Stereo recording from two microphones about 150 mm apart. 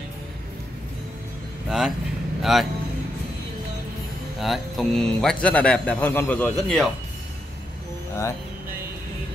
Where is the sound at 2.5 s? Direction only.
Centre (ahead or behind).